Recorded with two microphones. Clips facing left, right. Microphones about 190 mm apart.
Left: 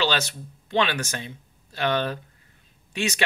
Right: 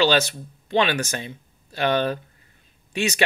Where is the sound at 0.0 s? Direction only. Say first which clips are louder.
Right 6 dB; 10° right (ahead or behind).